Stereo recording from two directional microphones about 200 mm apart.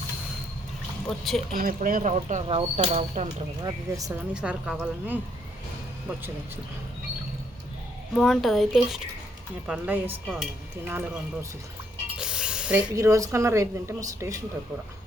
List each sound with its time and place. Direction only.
1.0 s a woman's voice: centre (ahead or behind)
1.5 s speech: 45° right (ahead or behind)
3.6 s speech: 20° right (ahead or behind)
4.4 s a woman's voice: 5° right (ahead or behind)
8.1 s a woman's voice: centre (ahead or behind)
12.1 s spray: 5° right (ahead or behind)
12.9 s speech: 15° right (ahead or behind)